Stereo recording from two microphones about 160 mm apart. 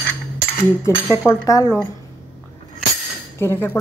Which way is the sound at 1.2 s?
20° left (ahead or behind).